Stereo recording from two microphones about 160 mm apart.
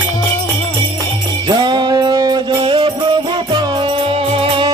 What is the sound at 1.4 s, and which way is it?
Music, 30° right (ahead or behind).